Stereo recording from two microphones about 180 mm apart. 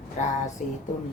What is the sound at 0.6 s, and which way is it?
Speech, 45° left (ahead or behind).